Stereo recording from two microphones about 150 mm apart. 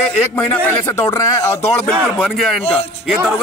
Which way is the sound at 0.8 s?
20° left (ahead or behind).